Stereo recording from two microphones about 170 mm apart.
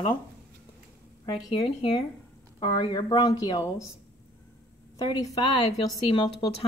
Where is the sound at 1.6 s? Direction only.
30° left (ahead or behind).